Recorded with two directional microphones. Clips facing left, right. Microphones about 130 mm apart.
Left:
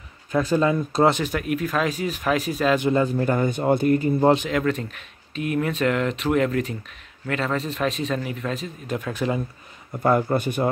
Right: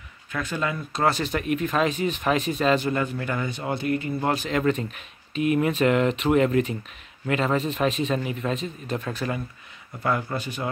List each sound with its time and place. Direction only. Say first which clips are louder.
0.3 s speech: left 8 dB; 35° left (ahead or behind)
1.1 s speech: left 1 dB; 10° left (ahead or behind)
2.9 s speech: left 6 dB; 35° left (ahead or behind)
4.5 s speech: even; centre (ahead or behind)
10.0 s speech: left 6 dB; 45° left (ahead or behind)